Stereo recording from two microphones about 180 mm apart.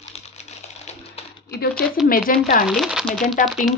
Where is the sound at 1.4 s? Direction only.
60° left (ahead or behind).